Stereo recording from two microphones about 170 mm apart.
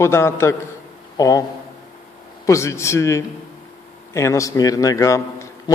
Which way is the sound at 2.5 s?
15° left (ahead or behind).